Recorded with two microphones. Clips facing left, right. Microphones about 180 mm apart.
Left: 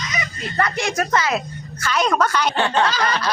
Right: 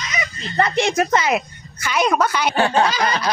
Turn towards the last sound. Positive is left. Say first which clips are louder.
# right 1 dB
turn(degrees=-10)  # may be behind; listen again after turning